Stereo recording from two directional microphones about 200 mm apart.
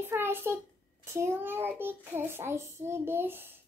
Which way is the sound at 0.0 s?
10° right (ahead or behind).